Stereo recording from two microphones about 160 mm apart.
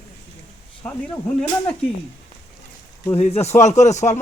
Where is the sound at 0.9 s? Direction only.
10° left (ahead or behind).